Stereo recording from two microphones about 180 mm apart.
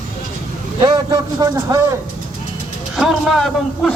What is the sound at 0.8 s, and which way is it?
Speech, 20° right (ahead or behind).